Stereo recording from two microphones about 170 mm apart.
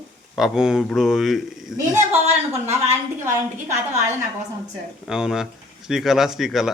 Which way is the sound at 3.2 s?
40° right (ahead or behind).